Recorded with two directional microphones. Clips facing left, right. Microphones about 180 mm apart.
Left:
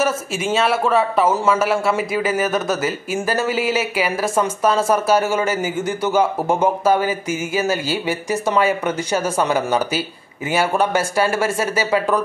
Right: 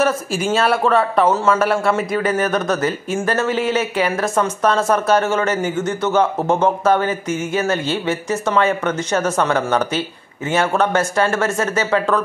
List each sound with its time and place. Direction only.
0.0 s a man's voice: centre (ahead or behind)